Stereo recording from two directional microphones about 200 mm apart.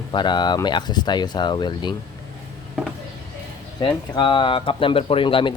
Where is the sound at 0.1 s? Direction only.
20° left (ahead or behind).